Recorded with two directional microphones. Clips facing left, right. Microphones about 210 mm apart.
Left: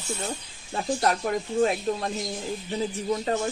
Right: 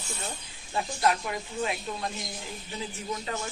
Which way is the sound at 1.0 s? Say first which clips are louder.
Left 1 dB; 45° left (ahead or behind).